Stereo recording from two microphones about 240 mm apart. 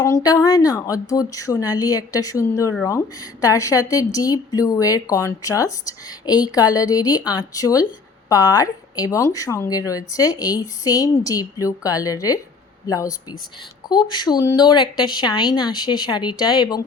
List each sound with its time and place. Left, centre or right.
0.0 s a woman's voice: centre